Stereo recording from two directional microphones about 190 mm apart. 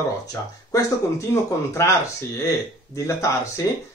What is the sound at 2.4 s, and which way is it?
Speech, 15° left (ahead or behind).